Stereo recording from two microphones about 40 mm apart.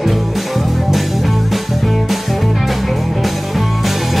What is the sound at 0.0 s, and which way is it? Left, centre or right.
Music, centre.